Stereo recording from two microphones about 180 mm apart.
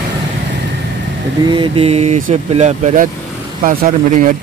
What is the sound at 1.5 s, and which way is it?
Speech, 30° right (ahead or behind).